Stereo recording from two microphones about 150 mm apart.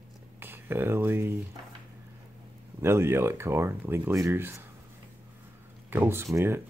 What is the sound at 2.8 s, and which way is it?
Speech, 15° right (ahead or behind).